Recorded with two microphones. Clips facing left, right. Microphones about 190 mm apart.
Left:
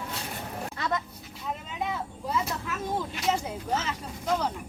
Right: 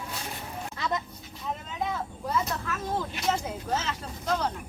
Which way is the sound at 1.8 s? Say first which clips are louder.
Right 1 dB; 5° left (ahead or behind).